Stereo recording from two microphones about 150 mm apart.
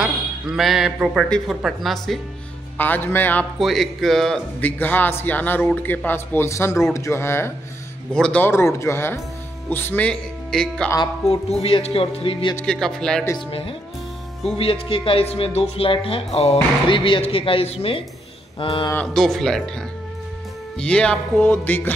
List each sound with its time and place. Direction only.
0.0 s speech: centre (ahead or behind)
2.8 s a man's voice: 15° left (ahead or behind)
3.5 s a man's voice: centre (ahead or behind)
11.2 s speech: 45° left (ahead or behind)
12.6 s speech: 5° left (ahead or behind)
14.6 s speech: 35° left (ahead or behind)
19.1 s speech: centre (ahead or behind)
20.7 s a man's voice: 5° left (ahead or behind)